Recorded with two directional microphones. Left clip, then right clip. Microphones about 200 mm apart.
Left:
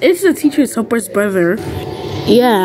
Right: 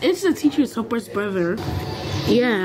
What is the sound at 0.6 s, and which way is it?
Speech, 20° left (ahead or behind).